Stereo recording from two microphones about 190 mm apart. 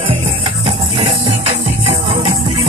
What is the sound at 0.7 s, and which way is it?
Music, 35° right (ahead or behind).